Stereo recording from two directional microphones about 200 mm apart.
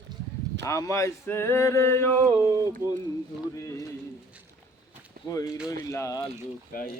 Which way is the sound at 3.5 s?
15° left (ahead or behind).